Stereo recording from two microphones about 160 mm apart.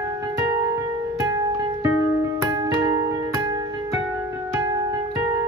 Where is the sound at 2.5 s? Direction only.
20° right (ahead or behind).